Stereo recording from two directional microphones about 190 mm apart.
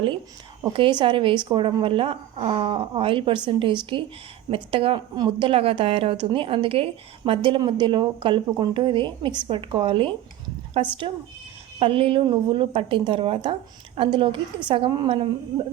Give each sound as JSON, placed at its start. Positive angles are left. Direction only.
{"t": 0.6, "sound": "a woman's voice", "side_deg": -25}